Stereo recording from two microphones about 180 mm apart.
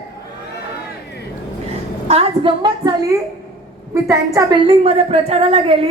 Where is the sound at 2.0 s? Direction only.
35° right (ahead or behind); by 4.4 s 15° right (ahead or behind).